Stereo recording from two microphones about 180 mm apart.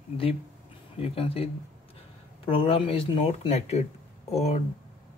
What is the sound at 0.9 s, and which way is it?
Speech, 30° left (ahead or behind).